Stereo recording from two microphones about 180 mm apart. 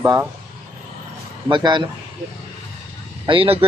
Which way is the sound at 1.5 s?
25° right (ahead or behind).